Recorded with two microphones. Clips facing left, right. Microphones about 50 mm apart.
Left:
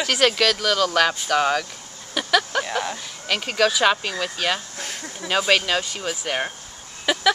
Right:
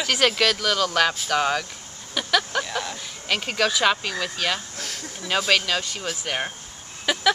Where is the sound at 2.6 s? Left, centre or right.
Centre.